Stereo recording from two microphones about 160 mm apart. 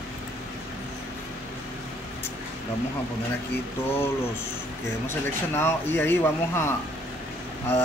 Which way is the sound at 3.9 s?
15° left (ahead or behind).